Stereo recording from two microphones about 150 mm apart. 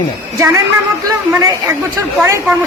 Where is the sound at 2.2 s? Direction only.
15° right (ahead or behind).